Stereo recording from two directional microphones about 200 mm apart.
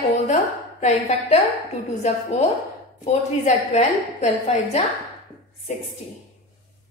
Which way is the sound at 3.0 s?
35° left (ahead or behind).